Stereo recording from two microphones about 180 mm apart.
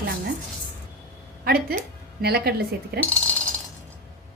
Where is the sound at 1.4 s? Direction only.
60° right (ahead or behind).